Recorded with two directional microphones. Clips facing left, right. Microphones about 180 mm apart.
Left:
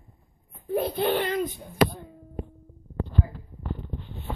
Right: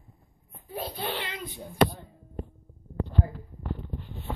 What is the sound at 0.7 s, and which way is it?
A child's voice, 55° left (ahead or behind).